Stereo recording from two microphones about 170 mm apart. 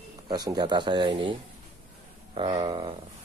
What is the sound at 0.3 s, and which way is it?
Speech, 25° right (ahead or behind).